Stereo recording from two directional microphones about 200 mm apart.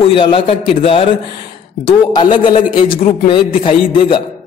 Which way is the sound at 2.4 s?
45° left (ahead or behind).